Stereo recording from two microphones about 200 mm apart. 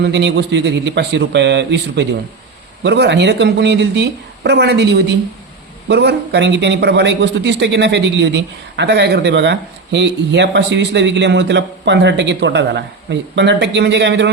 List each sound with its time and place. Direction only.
0.0 s a man's voice: 60° right (ahead or behind)